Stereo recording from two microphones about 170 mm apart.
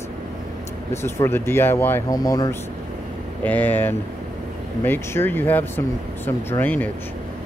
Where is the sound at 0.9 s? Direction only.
15° left (ahead or behind).